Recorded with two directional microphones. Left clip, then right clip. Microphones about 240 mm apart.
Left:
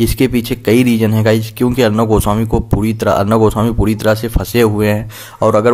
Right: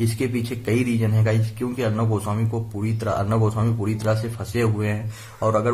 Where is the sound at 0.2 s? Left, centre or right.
Left.